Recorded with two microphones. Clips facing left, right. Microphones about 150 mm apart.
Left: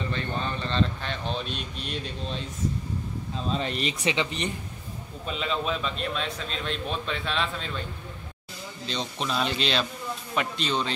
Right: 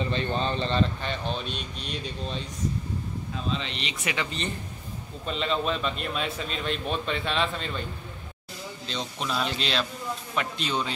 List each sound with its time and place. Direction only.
0.1 s speech: 20° right (ahead or behind)
1.0 s a man's voice: centre (ahead or behind)
3.5 s speech: 45° left (ahead or behind)
4.0 s speech: 20° left (ahead or behind)
5.2 s a man's voice: 5° left (ahead or behind)
8.8 s a man's voice: centre (ahead or behind)